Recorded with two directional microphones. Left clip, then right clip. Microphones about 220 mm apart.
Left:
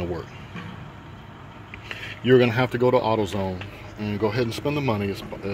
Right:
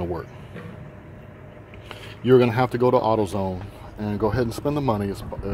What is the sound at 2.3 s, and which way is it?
Speech, 10° right (ahead or behind).